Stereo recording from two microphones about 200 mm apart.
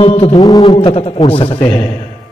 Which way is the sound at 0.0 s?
25° left (ahead or behind).